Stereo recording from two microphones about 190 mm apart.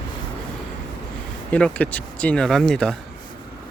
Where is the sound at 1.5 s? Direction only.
5° left (ahead or behind).